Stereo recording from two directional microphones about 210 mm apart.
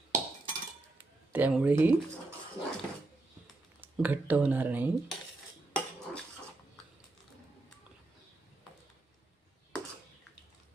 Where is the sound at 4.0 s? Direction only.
5° right (ahead or behind).